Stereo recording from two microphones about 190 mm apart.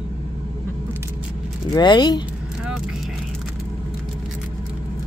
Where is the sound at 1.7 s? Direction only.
20° left (ahead or behind).